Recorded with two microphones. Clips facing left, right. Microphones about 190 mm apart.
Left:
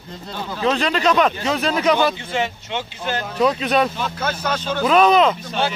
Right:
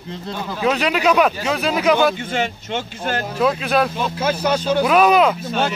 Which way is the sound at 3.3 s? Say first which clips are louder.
Left 1 dB; 5° right (ahead or behind).